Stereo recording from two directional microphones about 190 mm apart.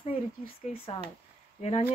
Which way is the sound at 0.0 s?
30° left (ahead or behind).